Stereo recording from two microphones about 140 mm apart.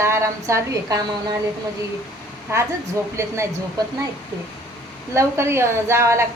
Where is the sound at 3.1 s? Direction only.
20° right (ahead or behind).